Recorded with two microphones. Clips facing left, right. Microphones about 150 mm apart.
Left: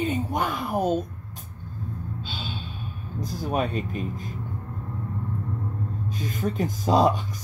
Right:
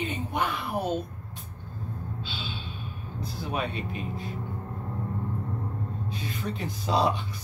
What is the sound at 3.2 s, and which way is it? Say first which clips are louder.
Speech: left 5 dB; 45° left (ahead or behind).